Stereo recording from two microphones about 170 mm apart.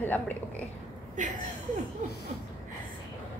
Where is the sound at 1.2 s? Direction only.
45° right (ahead or behind).